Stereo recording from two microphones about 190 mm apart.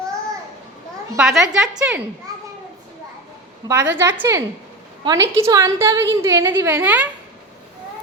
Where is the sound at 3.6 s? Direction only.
20° right (ahead or behind).